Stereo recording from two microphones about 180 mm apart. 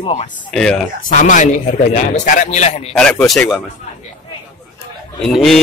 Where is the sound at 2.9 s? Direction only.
5° left (ahead or behind).